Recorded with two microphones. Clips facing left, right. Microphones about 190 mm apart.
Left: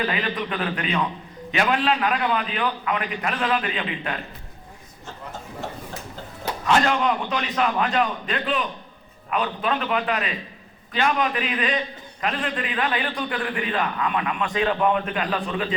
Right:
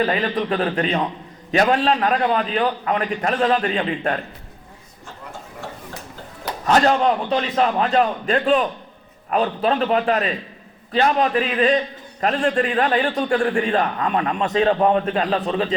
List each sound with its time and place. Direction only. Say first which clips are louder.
0.0 s a man's voice: right 5 dB; 35° right (ahead or behind)
6.7 s a man's voice: right 4 dB; 40° right (ahead or behind)